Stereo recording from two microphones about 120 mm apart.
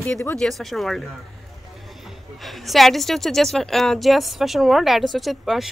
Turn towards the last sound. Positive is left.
turn(degrees=0)  # may be behind; listen again after turning